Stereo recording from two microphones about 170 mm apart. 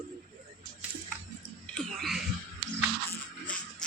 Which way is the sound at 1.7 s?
Centre (ahead or behind).